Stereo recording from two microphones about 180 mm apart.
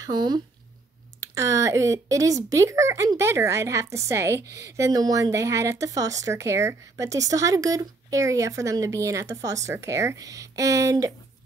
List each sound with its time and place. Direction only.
0.0 s speech: 25° right (ahead or behind)